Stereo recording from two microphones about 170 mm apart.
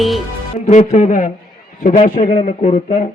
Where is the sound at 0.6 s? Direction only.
45° left (ahead or behind).